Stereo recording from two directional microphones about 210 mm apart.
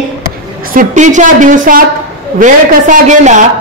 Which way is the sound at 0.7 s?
35° right (ahead or behind).